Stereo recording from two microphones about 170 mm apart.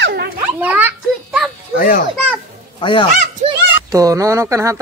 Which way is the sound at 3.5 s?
20° right (ahead or behind).